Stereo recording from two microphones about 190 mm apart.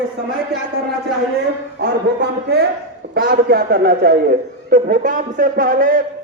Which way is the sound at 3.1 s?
55° right (ahead or behind).